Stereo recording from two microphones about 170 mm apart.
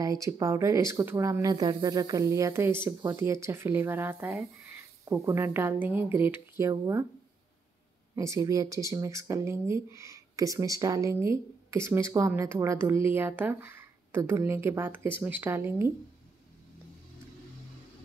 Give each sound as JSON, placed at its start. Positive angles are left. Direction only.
{"t": 0.0, "sound": "speech", "side_deg": -20}
{"t": 8.2, "sound": "speech", "side_deg": -20}